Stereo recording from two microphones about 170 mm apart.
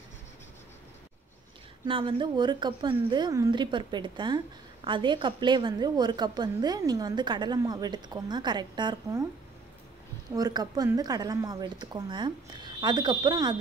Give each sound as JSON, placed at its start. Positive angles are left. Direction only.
{"t": 1.9, "sound": "a woman's voice", "side_deg": -30}
{"t": 10.3, "sound": "a woman's voice", "side_deg": -25}